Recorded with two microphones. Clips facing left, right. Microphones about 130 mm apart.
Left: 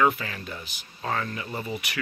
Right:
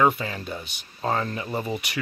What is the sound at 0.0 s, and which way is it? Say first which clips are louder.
Speech: right 2 dB; 25° right (ahead or behind).